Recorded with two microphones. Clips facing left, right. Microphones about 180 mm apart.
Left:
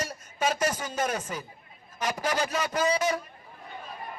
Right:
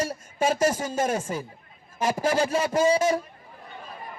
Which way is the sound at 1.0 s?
25° right (ahead or behind).